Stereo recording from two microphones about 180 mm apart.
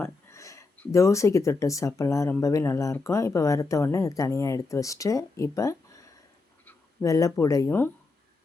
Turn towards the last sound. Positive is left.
turn(degrees=15)  # may be behind; listen again after turning